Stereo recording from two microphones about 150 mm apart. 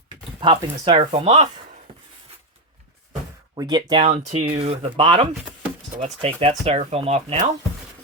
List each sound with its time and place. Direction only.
0.3 s speech: 35° right (ahead or behind)
3.5 s speech: 30° right (ahead or behind)
4.0 s speech: 50° right (ahead or behind)
6.0 s speech: 45° right (ahead or behind)